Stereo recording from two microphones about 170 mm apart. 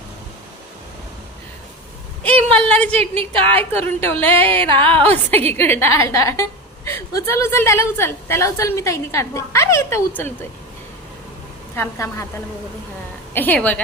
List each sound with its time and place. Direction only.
2.2 s a woman's voice: 5° left (ahead or behind)
11.8 s a woman's voice: 15° left (ahead or behind)
13.3 s a woman's voice: 10° left (ahead or behind)